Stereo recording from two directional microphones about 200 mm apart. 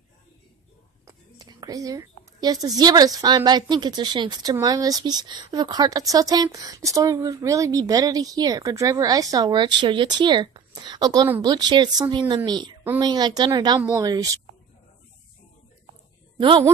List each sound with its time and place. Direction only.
1.0 s a woman's voice: 20° right (ahead or behind)
16.3 s a woman's voice: 20° right (ahead or behind)